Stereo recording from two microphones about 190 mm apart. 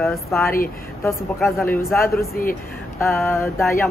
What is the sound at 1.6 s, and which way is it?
Speech, 15° left (ahead or behind).